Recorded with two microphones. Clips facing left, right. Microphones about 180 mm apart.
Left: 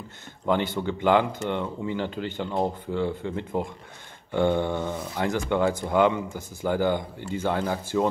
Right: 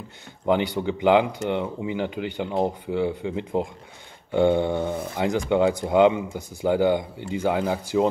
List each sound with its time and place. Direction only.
0.8 s speech: 15° right (ahead or behind)